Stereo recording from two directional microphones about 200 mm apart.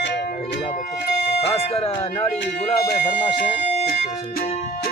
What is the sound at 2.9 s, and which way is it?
Speech, 50° left (ahead or behind).